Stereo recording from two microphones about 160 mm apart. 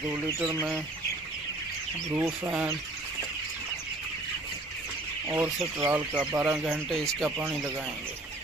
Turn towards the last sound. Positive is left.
turn(degrees=-10)  # may be behind; listen again after turning